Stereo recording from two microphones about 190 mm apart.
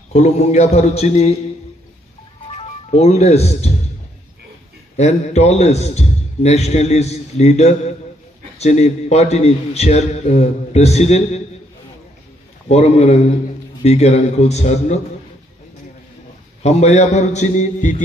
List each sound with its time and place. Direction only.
0.1 s a man's voice: 35° left (ahead or behind)
2.4 s music: 30° left (ahead or behind)
4.9 s a man's voice: 35° left (ahead or behind)
12.6 s a man's voice: 35° left (ahead or behind)
16.6 s a man's voice: 35° left (ahead or behind)